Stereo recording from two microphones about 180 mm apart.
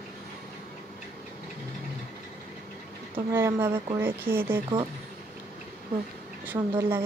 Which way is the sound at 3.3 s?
10° right (ahead or behind).